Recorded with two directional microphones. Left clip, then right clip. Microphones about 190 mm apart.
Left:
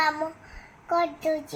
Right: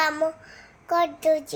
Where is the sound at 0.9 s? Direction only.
25° right (ahead or behind).